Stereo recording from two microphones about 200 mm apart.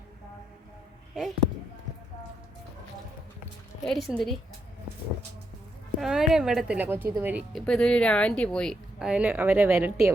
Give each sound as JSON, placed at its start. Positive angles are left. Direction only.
{"t": 3.8, "sound": "speech", "side_deg": 0}
{"t": 6.0, "sound": "speech", "side_deg": 0}
{"t": 7.5, "sound": "speech", "side_deg": 5}